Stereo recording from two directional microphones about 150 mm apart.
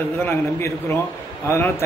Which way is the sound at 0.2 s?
15° left (ahead or behind).